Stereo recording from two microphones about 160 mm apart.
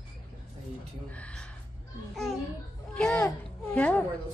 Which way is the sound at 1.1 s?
5° left (ahead or behind).